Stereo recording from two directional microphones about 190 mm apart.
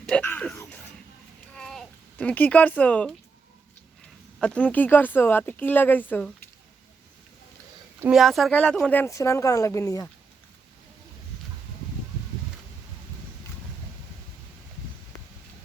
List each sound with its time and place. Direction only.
0.0 s music: 5° left (ahead or behind)
1.5 s a sound: centre (ahead or behind)
4.4 s speech: 5° left (ahead or behind)
8.0 s speech: centre (ahead or behind); by 10.1 s 20° left (ahead or behind)